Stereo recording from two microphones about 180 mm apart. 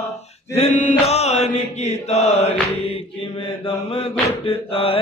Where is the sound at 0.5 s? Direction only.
40° left (ahead or behind).